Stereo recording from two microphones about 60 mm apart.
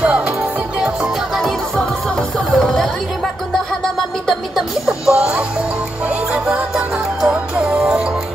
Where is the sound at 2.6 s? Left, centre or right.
Centre.